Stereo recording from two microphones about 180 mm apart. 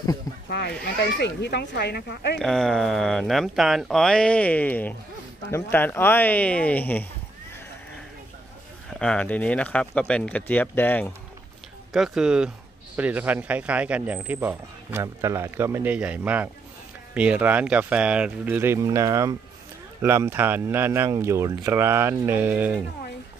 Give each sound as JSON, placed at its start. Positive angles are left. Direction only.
{"t": 0.5, "sound": "speech", "side_deg": 65}
{"t": 2.3, "sound": "speech", "side_deg": 0}
{"t": 8.9, "sound": "speech", "side_deg": 5}
{"t": 11.9, "sound": "speech", "side_deg": 0}